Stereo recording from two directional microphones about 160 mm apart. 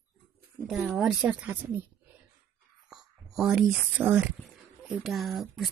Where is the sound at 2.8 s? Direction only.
5° right (ahead or behind).